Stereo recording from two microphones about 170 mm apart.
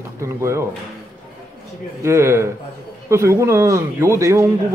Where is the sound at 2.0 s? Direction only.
15° right (ahead or behind).